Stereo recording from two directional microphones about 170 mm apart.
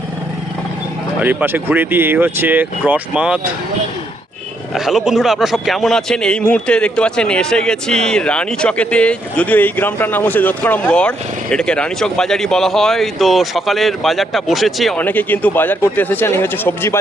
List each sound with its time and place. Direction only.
1.2 s speech: 10° right (ahead or behind)
4.7 s a man's voice: centre (ahead or behind)